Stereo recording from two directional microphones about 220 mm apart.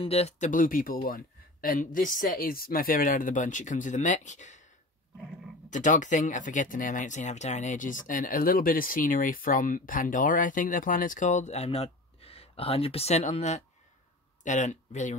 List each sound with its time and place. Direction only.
0.0 s speech: 30° left (ahead or behind)
5.7 s speech: 35° left (ahead or behind)